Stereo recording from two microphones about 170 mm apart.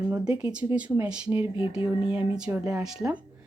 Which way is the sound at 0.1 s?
5° right (ahead or behind).